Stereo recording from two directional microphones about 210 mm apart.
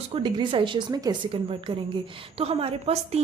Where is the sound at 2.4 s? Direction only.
25° right (ahead or behind).